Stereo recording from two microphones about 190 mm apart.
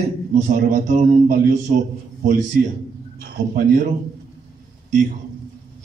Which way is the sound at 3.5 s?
45° right (ahead or behind).